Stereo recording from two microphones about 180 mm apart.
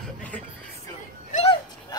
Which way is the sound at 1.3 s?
35° left (ahead or behind).